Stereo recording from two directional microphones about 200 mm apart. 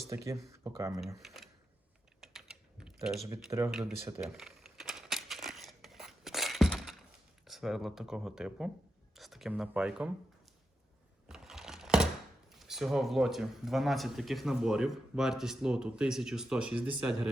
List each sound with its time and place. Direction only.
0.1 s speech: 15° right (ahead or behind)
1.0 s speech: centre (ahead or behind)
2.2 s typing: centre (ahead or behind)
3.2 s speech: 15° right (ahead or behind)
3.7 s a man's voice: centre (ahead or behind)
4.4 s a sound: centre (ahead or behind)
7.4 s a man's voice: centre (ahead or behind)
11.3 s computer keyboard: centre (ahead or behind)
12.5 s a man's voice: centre (ahead or behind)